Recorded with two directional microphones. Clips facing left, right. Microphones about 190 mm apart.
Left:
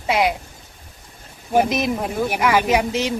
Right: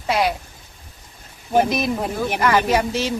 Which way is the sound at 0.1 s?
20° left (ahead or behind).